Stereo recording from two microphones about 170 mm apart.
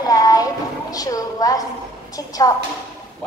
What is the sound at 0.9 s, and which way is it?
A woman's voice, 20° left (ahead or behind).